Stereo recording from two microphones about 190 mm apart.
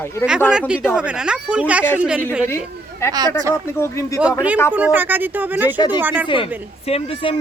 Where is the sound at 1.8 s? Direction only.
10° left (ahead or behind).